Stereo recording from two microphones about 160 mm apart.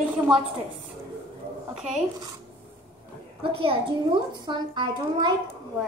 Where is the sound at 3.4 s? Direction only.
35° right (ahead or behind).